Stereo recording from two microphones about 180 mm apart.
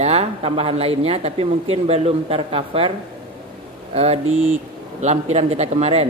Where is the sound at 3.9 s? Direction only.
35° right (ahead or behind).